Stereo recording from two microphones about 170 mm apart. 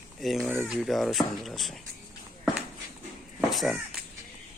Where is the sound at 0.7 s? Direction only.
Centre (ahead or behind).